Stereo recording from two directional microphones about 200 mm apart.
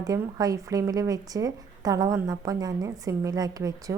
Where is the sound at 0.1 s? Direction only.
15° right (ahead or behind).